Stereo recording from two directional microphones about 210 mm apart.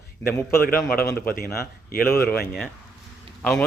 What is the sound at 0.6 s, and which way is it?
Speech, 45° left (ahead or behind).